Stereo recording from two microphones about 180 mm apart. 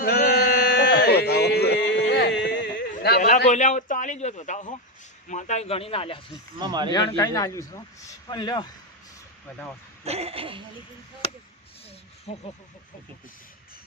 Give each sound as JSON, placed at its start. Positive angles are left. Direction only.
{"t": 0.0, "sound": "a sound", "side_deg": 55}
{"t": 3.0, "sound": "speech", "side_deg": 60}
{"t": 3.5, "sound": "a man's voice", "side_deg": 45}
{"t": 6.6, "sound": "speech", "side_deg": -25}
{"t": 6.9, "sound": "a man's voice", "side_deg": 20}
{"t": 10.0, "sound": "a sound", "side_deg": -35}
{"t": 12.3, "sound": "speech", "side_deg": 30}